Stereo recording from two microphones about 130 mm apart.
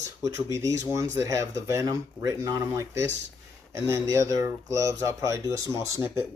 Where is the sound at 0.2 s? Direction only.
25° right (ahead or behind).